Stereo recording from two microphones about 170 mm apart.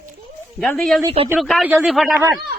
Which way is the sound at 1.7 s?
10° right (ahead or behind).